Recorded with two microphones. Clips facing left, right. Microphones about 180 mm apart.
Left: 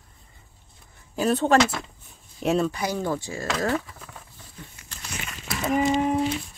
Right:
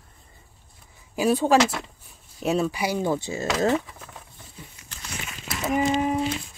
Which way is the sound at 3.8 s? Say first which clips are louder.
Right 1 dB; 5° right (ahead or behind).